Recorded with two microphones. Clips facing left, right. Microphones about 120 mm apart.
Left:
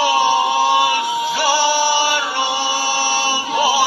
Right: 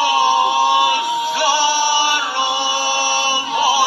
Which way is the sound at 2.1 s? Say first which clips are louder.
Even; 15° right (ahead or behind).